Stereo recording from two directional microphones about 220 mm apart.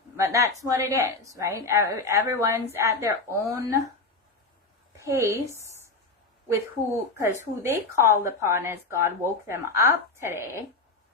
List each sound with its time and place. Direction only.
0.2 s a woman's voice: 15° right (ahead or behind)
5.0 s a woman's voice: 15° right (ahead or behind)
7.2 s a woman's voice: 10° right (ahead or behind)